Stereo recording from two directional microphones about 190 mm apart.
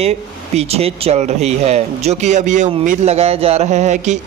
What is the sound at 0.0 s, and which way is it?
Speech, 35° right (ahead or behind).